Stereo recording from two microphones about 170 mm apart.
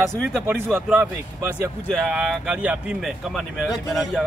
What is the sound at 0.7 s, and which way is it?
Speech, 15° right (ahead or behind).